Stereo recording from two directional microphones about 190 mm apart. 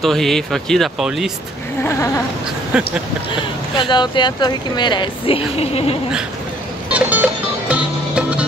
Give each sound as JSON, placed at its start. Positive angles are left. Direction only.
{"t": 0.0, "sound": "speech", "side_deg": 0}
{"t": 1.8, "sound": "goat", "side_deg": 15}
{"t": 2.7, "sound": "speech", "side_deg": -5}
{"t": 3.7, "sound": "speech", "side_deg": 25}
{"t": 6.9, "sound": "music", "side_deg": -5}